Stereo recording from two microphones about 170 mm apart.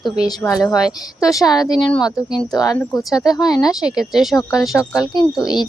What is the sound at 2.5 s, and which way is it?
Speech, 20° left (ahead or behind).